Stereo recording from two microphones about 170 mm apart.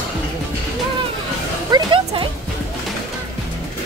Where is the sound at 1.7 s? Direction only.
30° right (ahead or behind).